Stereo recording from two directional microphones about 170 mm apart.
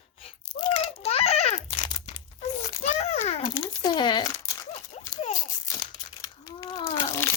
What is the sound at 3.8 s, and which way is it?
Speech, 25° left (ahead or behind).